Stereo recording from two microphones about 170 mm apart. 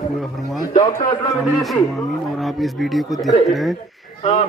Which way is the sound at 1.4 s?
Centre (ahead or behind).